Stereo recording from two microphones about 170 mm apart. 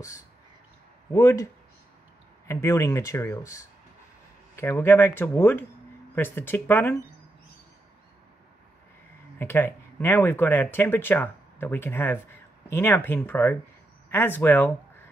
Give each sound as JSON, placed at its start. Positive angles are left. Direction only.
{"t": 1.1, "sound": "speech", "side_deg": 20}
{"t": 9.4, "sound": "speech", "side_deg": 15}